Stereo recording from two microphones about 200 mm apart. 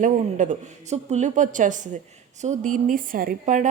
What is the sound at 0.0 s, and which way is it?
Speech, 40° right (ahead or behind).